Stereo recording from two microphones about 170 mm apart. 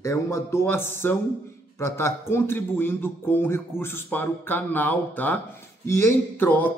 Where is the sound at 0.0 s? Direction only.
15° left (ahead or behind).